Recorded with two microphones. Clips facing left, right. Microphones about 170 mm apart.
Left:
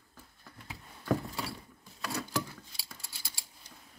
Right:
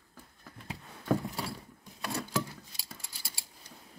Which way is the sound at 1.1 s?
Centre (ahead or behind).